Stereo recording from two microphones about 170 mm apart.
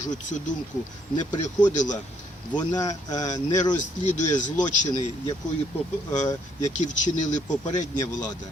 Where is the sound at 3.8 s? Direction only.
45° left (ahead or behind).